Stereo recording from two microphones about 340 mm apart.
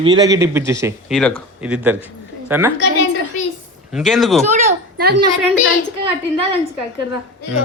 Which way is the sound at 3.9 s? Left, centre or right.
Centre.